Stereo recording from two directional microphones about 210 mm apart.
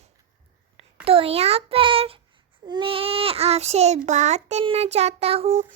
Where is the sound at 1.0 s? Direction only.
25° right (ahead or behind).